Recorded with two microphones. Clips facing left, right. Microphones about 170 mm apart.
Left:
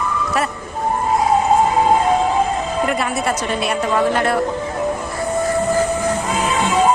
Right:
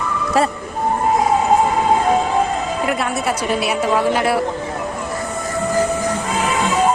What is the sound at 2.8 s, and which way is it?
A woman's voice, centre (ahead or behind).